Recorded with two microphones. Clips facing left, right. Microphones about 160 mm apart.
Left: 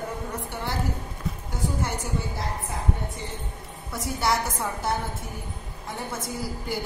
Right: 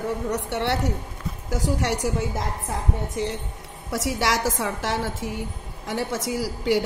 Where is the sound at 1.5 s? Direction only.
90° right.